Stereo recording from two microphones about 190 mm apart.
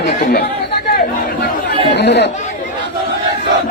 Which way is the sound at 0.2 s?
55° left (ahead or behind).